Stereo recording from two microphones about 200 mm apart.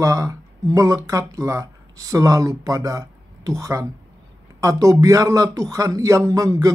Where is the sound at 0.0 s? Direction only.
15° right (ahead or behind).